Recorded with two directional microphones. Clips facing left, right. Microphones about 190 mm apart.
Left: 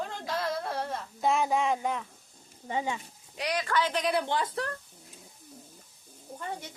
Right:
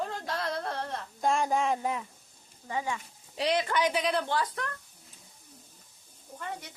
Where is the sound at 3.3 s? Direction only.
25° right (ahead or behind).